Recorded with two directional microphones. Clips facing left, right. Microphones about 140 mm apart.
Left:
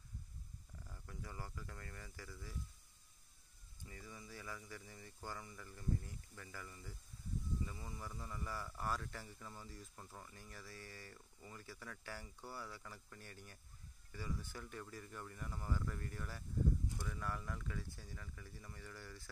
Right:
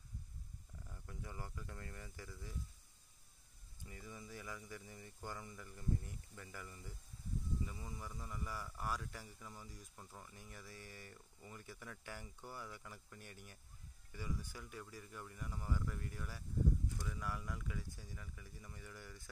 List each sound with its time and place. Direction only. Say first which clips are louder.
1.0 s speech: even; 20° right (ahead or behind)
3.8 s speech: right 1 dB; 25° right (ahead or behind)
9.9 s speech: left 1 dB; centre (ahead or behind)
10.3 s speech: even; 15° right (ahead or behind)